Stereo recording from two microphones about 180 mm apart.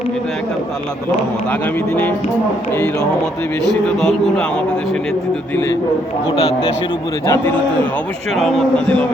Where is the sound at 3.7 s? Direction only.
Centre (ahead or behind).